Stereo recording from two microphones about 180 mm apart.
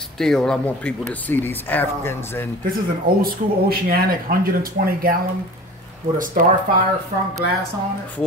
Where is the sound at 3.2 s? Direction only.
55° right (ahead or behind).